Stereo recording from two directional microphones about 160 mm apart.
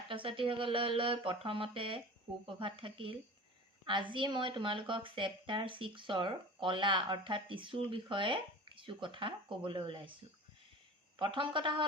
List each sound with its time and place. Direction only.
0.1 s speech: 35° right (ahead or behind)
11.2 s speech: 30° right (ahead or behind)